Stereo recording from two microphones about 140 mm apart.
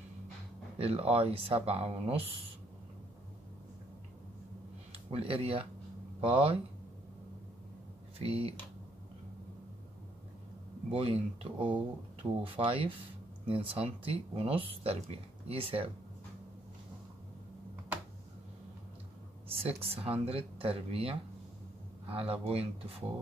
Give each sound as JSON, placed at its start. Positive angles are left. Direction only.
{"t": 0.7, "sound": "speech", "side_deg": -45}
{"t": 4.9, "sound": "speech", "side_deg": -40}
{"t": 8.2, "sound": "speech", "side_deg": -45}
{"t": 10.9, "sound": "speech", "side_deg": -45}
{"t": 19.4, "sound": "speech", "side_deg": -45}